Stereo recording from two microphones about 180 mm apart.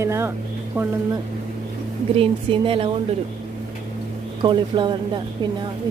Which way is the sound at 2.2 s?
30° right (ahead or behind).